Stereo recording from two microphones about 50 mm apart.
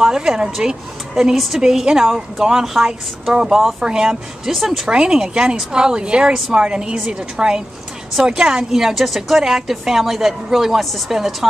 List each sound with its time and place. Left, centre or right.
0.0 s a woman's voice: centre
4.8 s a woman's voice: centre